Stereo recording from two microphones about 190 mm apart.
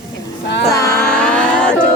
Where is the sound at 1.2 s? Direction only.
5° left (ahead or behind).